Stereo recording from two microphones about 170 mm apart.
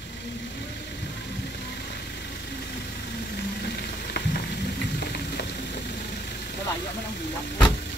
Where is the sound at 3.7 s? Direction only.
70° left (ahead or behind).